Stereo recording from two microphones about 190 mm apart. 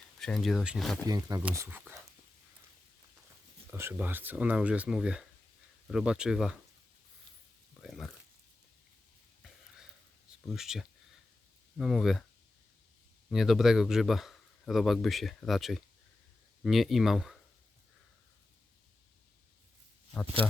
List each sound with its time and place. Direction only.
0.2 s speech: centre (ahead or behind)
1.0 s speech: 20° right (ahead or behind)
3.7 s speech: 10° right (ahead or behind)
7.8 s a sound: centre (ahead or behind)
9.4 s a sound: 5° right (ahead or behind)
10.5 s speech: centre (ahead or behind)
13.3 s speech: centre (ahead or behind)
20.4 s speech: 5° left (ahead or behind)